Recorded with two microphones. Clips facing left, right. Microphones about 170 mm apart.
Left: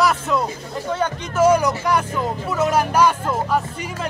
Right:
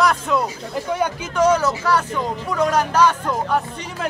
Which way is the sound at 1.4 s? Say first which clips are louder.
Left 1 dB; 10° left (ahead or behind).